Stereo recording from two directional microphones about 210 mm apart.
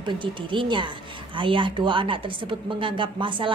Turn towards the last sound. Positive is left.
turn(degrees=-25)  # may be behind; listen again after turning